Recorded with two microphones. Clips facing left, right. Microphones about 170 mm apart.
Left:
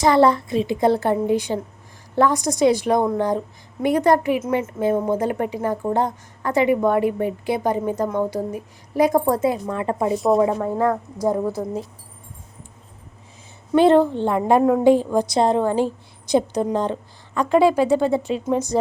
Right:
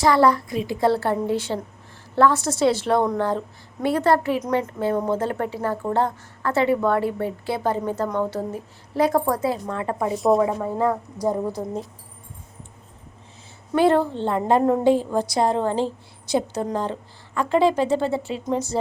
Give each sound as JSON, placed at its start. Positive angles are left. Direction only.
{"t": 0.0, "sound": "a woman's voice", "side_deg": 20}
{"t": 10.2, "sound": "speech", "side_deg": 0}
{"t": 10.8, "sound": "speech", "side_deg": -10}
{"t": 13.7, "sound": "a woman's voice", "side_deg": 20}